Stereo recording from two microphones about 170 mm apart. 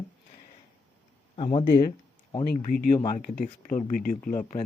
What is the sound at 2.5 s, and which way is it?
Speech, 60° left (ahead or behind).